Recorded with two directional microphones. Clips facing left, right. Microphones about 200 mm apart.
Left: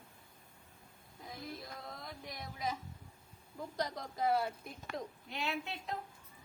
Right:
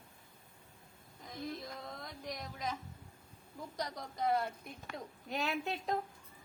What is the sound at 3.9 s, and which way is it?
Speech, centre (ahead or behind).